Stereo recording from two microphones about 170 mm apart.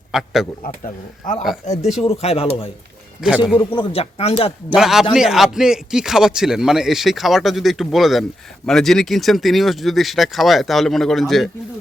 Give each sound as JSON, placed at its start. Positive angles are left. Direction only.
{"t": 0.1, "sound": "speech", "side_deg": 0}
{"t": 1.2, "sound": "speech", "side_deg": 50}
{"t": 3.2, "sound": "speech", "side_deg": -5}
{"t": 3.6, "sound": "speech", "side_deg": 30}
{"t": 4.7, "sound": "speech", "side_deg": 0}